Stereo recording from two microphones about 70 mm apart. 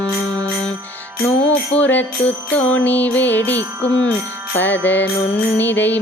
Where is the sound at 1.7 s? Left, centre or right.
Left.